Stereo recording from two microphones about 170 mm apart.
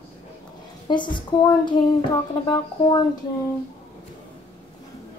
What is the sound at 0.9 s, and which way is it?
Speech, 25° left (ahead or behind).